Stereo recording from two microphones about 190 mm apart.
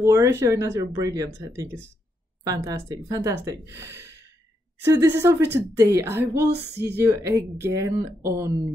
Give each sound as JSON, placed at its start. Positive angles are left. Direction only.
{"t": 0.0, "sound": "speech", "side_deg": -15}